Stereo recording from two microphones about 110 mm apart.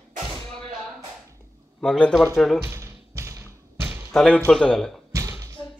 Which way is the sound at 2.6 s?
25° right (ahead or behind).